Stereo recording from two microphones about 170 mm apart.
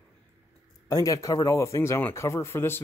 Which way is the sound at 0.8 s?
20° left (ahead or behind).